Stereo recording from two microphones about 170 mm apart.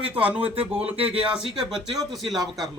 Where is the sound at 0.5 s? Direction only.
35° right (ahead or behind).